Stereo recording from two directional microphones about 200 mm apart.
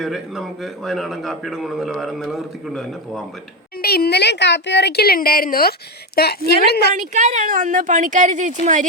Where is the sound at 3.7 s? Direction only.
50° left (ahead or behind).